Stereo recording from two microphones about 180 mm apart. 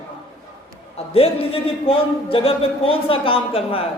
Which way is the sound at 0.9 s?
35° left (ahead or behind).